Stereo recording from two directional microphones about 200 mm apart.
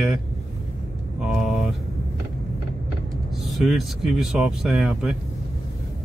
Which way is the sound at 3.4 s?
Centre (ahead or behind).